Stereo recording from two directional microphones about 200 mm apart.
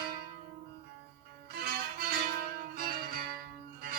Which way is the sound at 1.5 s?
50° right (ahead or behind).